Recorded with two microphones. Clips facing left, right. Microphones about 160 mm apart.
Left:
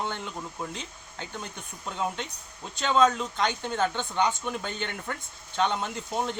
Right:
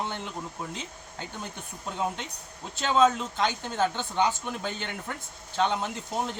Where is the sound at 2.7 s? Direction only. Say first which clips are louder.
Even; 5° right (ahead or behind).